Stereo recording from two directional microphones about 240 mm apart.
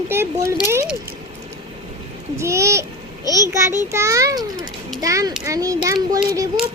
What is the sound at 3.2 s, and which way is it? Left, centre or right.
Speech, centre.